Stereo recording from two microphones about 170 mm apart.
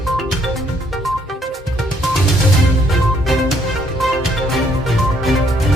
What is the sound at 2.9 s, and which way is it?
Music, centre (ahead or behind).